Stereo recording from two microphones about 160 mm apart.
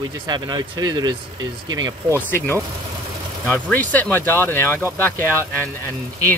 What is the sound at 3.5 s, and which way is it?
Speech, 10° left (ahead or behind).